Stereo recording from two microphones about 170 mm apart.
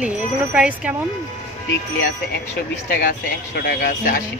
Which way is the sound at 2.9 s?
65° left (ahead or behind).